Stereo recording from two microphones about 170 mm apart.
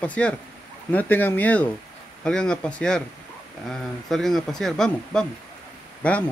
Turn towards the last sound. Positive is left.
turn(degrees=5)  # may be behind; listen again after turning